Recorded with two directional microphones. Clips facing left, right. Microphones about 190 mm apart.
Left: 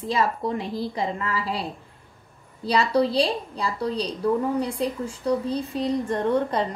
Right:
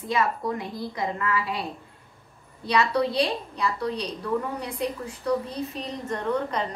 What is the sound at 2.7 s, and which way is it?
A woman's voice, 30° left (ahead or behind).